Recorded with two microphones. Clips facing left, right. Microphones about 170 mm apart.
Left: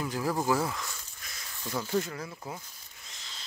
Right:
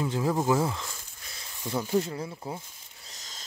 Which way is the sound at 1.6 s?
15° right (ahead or behind).